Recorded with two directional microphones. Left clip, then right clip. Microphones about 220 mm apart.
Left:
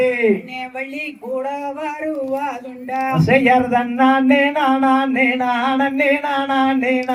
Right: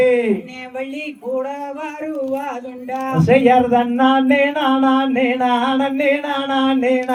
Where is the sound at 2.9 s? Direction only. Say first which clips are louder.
Right 1 dB; 15° left (ahead or behind).